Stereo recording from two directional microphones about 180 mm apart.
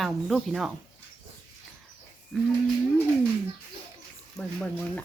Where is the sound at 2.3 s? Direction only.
Centre (ahead or behind).